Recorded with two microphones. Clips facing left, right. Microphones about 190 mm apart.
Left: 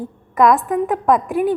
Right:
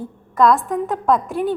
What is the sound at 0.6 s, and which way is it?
Speech, centre (ahead or behind).